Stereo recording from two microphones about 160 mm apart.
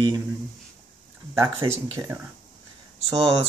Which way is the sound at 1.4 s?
15° right (ahead or behind).